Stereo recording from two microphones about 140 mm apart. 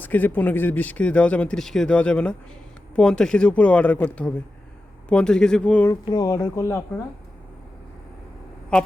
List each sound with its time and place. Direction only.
0.0 s speech: 10° left (ahead or behind)
5.9 s speech: 25° left (ahead or behind)